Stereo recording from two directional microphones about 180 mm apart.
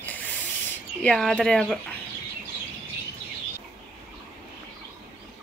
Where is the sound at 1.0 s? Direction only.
Centre (ahead or behind).